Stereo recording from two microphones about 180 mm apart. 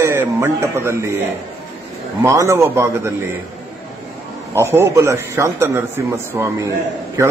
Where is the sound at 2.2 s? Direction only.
15° right (ahead or behind).